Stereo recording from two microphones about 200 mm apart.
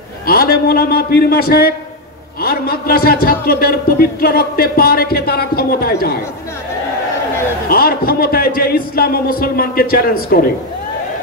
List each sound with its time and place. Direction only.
0.3 s speech: 50° left (ahead or behind)
7.7 s speech: 50° left (ahead or behind)